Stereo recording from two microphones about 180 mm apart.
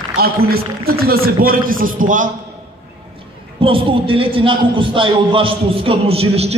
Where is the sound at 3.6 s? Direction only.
30° right (ahead or behind).